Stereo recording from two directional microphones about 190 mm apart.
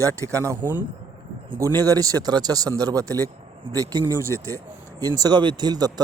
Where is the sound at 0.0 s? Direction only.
15° right (ahead or behind).